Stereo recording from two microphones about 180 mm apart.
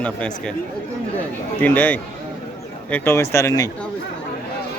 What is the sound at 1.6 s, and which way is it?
A man's voice, 10° left (ahead or behind).